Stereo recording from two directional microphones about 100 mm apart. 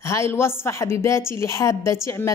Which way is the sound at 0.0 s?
25° left (ahead or behind).